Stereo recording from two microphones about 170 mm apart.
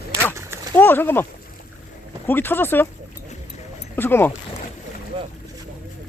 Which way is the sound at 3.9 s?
10° left (ahead or behind).